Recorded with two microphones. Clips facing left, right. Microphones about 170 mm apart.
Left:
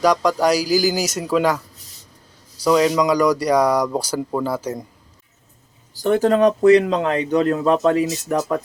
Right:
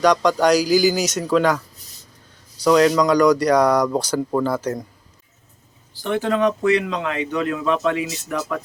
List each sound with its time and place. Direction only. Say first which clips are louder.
0.0 s speech: right 1 dB; 5° left (ahead or behind)
2.6 s speech: right 1 dB; 5° left (ahead or behind)
5.9 s speech: left 5 dB; 40° left (ahead or behind)